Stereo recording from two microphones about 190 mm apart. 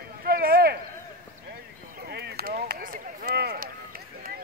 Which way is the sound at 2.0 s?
55° right (ahead or behind).